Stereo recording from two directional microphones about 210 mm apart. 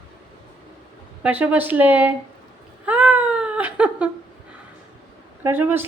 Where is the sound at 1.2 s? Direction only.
5° right (ahead or behind).